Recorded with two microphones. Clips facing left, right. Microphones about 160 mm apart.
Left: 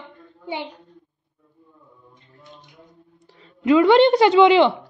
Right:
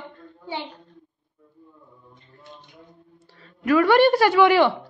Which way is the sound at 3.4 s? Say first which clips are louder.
Left 4 dB; 20° left (ahead or behind).